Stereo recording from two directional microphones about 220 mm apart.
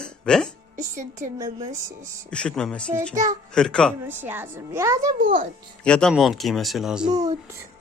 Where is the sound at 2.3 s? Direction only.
5° left (ahead or behind).